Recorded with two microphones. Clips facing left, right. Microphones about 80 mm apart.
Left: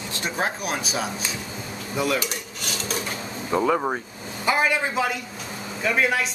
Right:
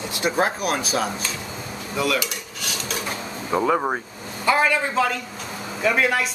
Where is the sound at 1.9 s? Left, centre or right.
Left.